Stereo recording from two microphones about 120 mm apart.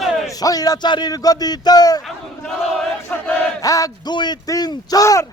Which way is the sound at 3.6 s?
30° left (ahead or behind).